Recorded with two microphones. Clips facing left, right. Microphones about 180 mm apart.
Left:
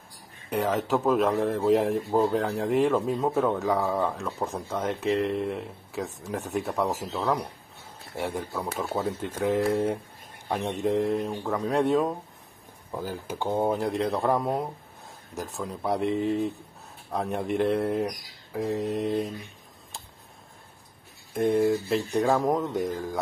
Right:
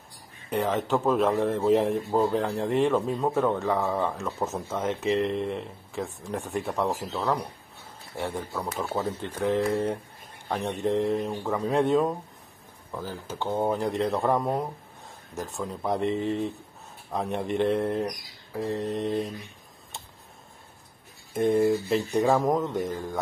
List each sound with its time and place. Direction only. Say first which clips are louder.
0.5 s speech: even; centre (ahead or behind)
12.9 s speech: left 2 dB; 15° left (ahead or behind)
21.3 s speech: right 1 dB; centre (ahead or behind)